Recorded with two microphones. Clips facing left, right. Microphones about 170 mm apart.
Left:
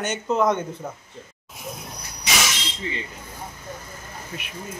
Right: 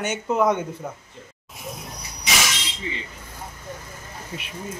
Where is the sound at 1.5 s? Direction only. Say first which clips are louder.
Even; centre (ahead or behind).